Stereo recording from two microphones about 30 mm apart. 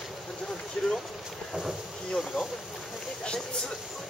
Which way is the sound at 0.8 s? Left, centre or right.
Left.